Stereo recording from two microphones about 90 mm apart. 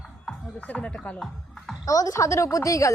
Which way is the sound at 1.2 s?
Centre (ahead or behind).